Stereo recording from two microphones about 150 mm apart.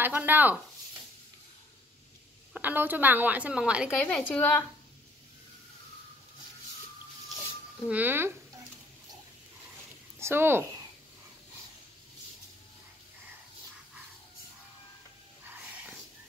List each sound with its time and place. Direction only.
0.0 s a woman's voice: 10° right (ahead or behind)
2.5 s a woman's voice: 10° right (ahead or behind)
4.0 s a woman's voice: 10° left (ahead or behind)
7.8 s a woman's voice: 10° right (ahead or behind)
10.1 s speech: 15° right (ahead or behind)
15.4 s a sound: 10° right (ahead or behind)